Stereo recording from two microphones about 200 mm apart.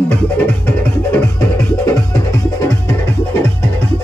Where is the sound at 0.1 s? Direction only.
10° left (ahead or behind).